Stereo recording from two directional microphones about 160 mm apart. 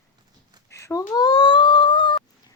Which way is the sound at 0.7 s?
20° left (ahead or behind).